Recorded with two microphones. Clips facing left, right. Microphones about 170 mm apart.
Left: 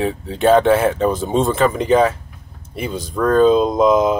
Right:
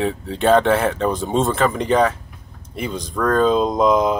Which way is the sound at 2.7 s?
5° left (ahead or behind).